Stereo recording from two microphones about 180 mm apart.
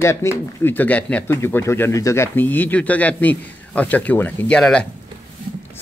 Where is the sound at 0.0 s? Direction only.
15° left (ahead or behind).